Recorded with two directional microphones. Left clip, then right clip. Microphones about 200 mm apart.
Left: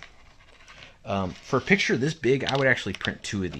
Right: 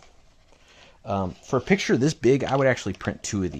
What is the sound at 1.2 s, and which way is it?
Speech, 45° right (ahead or behind).